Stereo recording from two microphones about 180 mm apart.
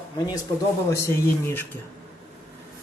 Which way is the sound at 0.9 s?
15° left (ahead or behind).